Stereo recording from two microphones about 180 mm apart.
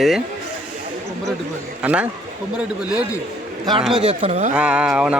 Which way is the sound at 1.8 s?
5° right (ahead or behind).